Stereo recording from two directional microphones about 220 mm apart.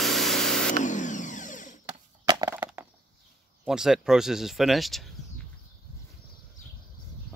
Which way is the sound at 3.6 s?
5° right (ahead or behind).